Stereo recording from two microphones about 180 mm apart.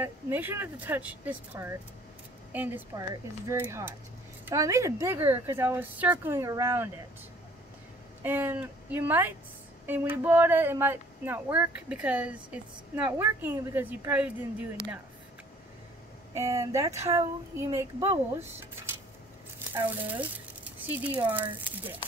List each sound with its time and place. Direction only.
0.0 s speech: 10° right (ahead or behind)
8.2 s speech: 10° right (ahead or behind)
16.3 s speech: 15° right (ahead or behind)